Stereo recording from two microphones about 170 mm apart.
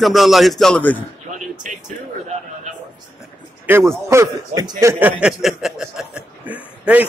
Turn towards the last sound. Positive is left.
turn(degrees=-10)  # may be behind; listen again after turning